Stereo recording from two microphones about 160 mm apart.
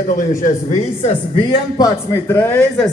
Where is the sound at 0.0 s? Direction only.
55° left (ahead or behind).